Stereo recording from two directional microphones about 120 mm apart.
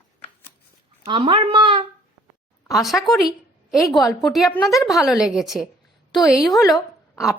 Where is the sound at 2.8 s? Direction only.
Centre (ahead or behind).